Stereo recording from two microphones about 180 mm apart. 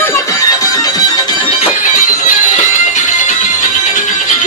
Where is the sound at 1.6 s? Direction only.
45° left (ahead or behind).